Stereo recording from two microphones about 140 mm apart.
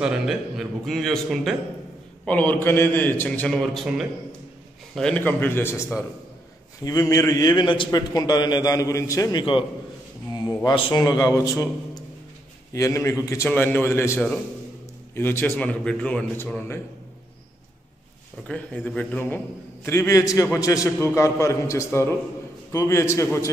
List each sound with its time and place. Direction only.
0.0 s a man's voice: 5° right (ahead or behind)
2.2 s a man's voice: 10° left (ahead or behind)
12.7 s a man's voice: 20° left (ahead or behind)
18.9 s a man's voice: 10° left (ahead or behind)